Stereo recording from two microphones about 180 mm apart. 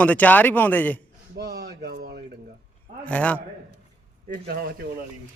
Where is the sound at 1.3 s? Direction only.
70° right (ahead or behind).